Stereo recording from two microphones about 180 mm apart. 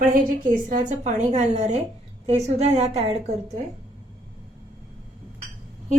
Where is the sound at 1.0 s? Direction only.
40° right (ahead or behind).